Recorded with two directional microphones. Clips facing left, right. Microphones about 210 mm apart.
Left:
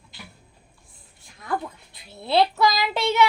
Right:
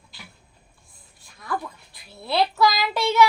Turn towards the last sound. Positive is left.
turn(degrees=20)  # may be behind; listen again after turning